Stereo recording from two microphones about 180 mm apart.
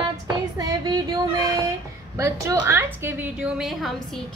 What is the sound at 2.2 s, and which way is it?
A woman's voice, 15° right (ahead or behind).